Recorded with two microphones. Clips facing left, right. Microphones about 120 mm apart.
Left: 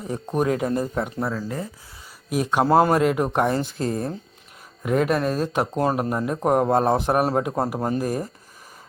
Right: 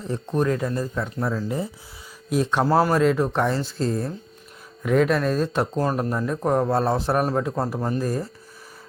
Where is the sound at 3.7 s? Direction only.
50° left (ahead or behind).